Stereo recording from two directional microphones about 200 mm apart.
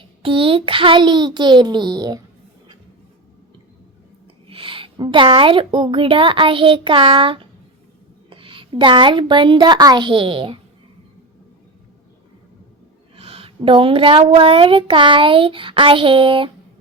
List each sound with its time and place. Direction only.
0.2 s speech: 25° right (ahead or behind)
4.4 s a woman's voice: 25° right (ahead or behind)
13.1 s speech: 30° right (ahead or behind)